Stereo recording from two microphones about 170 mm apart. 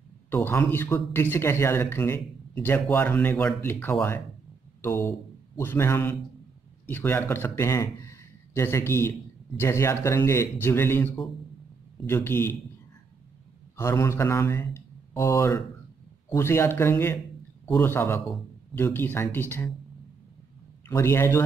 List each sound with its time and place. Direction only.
0.3 s a man's voice: 10° left (ahead or behind)
13.7 s a man's voice: 15° left (ahead or behind)
20.9 s speech: 15° left (ahead or behind)